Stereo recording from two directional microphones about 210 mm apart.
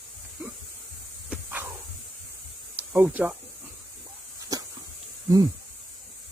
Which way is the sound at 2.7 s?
10° right (ahead or behind).